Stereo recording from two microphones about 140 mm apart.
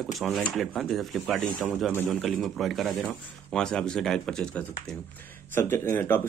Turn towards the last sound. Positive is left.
turn(degrees=15)  # may be behind; listen again after turning